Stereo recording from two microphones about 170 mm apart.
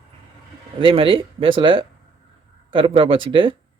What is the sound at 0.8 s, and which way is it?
Speech, 30° right (ahead or behind).